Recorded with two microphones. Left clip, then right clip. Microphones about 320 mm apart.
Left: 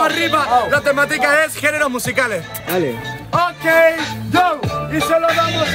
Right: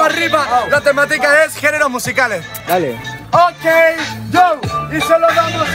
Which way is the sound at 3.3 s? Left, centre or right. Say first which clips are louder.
Right 4 dB; centre.